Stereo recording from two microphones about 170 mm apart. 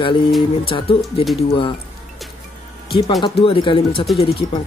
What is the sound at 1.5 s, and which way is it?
Speech, 30° left (ahead or behind).